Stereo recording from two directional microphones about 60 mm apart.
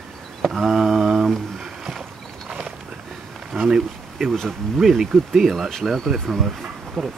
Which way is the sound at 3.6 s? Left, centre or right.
Centre.